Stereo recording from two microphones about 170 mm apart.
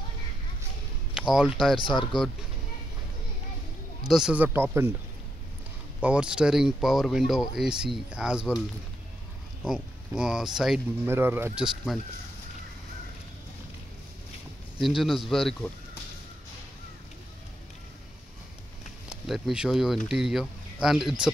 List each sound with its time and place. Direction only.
1.1 s speech: 5° right (ahead or behind)
1.8 s speech: 30° left (ahead or behind)
4.1 s speech: 5° right (ahead or behind)
5.9 s speech: 5° right (ahead or behind)
9.6 s speech: 5° right (ahead or behind)
11.1 s speech: 15° right (ahead or behind)
15.0 s speech: centre (ahead or behind)
19.0 s speech: centre (ahead or behind)